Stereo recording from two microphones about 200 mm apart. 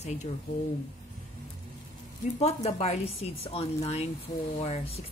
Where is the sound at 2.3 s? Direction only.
30° left (ahead or behind).